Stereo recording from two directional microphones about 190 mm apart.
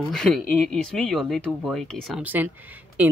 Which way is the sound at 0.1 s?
5° left (ahead or behind).